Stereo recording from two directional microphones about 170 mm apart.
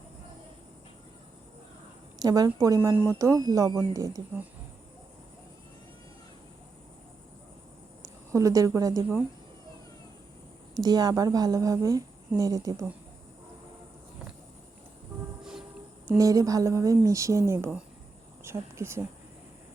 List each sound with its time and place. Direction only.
2.1 s a woman's voice: 20° right (ahead or behind)
8.0 s a woman's voice: 20° right (ahead or behind)
10.8 s a woman's voice: 25° right (ahead or behind)
16.0 s a woman's voice: 20° right (ahead or behind)